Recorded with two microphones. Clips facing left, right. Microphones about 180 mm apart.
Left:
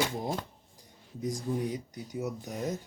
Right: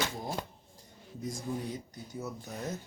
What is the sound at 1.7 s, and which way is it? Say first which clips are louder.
Speech: left 4 dB; 15° left (ahead or behind).